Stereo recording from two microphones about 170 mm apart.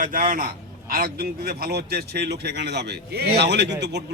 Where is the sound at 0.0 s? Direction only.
55° right (ahead or behind).